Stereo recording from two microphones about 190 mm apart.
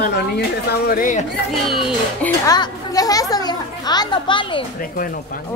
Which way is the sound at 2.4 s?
20° left (ahead or behind).